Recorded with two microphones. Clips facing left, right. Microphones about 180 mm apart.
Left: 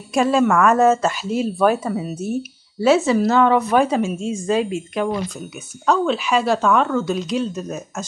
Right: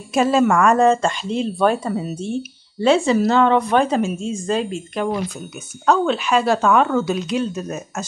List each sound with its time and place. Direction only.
0.1 s speech: centre (ahead or behind)